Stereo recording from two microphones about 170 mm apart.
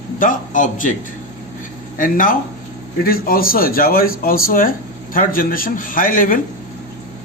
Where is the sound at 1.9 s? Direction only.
55° left (ahead or behind).